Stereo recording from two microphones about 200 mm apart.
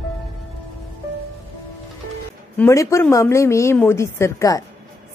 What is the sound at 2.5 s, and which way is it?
Speech, 15° left (ahead or behind).